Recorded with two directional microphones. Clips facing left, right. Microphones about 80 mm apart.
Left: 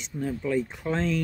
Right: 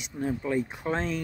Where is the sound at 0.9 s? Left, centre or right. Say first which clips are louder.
Left 3 dB; right.